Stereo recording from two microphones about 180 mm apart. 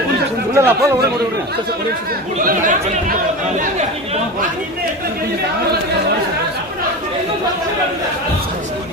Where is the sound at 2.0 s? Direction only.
50° right (ahead or behind).